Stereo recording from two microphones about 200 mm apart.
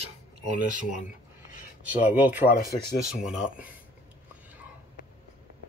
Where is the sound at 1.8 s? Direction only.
5° right (ahead or behind).